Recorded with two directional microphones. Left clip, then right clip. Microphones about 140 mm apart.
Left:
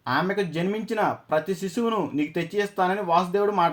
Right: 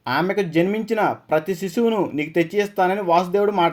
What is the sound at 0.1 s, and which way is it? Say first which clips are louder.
Speech: right 4 dB; 35° right (ahead or behind).